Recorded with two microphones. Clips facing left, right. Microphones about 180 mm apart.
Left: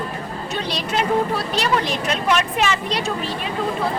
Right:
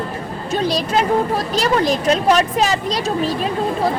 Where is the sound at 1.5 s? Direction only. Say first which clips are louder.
Right 6 dB; 40° right (ahead or behind).